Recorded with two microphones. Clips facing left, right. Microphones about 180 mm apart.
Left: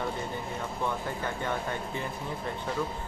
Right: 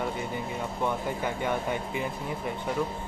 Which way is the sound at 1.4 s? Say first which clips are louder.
Right 3 dB; 15° right (ahead or behind).